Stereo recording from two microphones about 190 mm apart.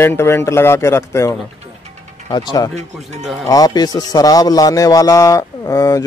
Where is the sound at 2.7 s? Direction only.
35° right (ahead or behind).